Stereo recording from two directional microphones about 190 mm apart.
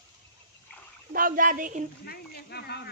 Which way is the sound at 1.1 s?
45° right (ahead or behind).